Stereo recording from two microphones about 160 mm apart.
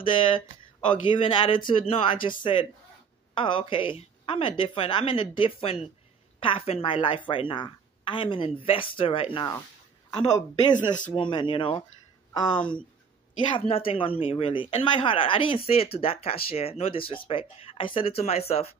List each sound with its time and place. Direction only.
0.1 s a woman's voice: 30° left (ahead or behind)
3.3 s a woman's voice: 30° left (ahead or behind)